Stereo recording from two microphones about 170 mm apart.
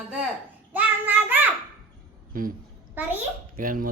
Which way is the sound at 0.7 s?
10° right (ahead or behind).